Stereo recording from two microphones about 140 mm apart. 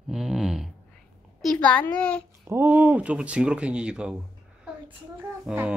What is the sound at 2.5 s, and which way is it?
Speech, 15° right (ahead or behind).